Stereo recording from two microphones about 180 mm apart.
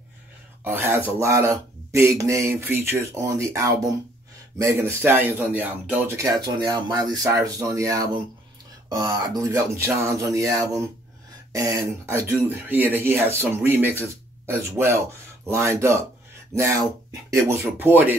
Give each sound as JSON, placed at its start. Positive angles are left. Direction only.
{"t": 0.7, "sound": "speech", "side_deg": -10}
{"t": 17.3, "sound": "speech", "side_deg": -15}